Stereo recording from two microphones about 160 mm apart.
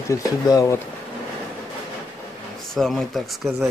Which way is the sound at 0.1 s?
20° left (ahead or behind).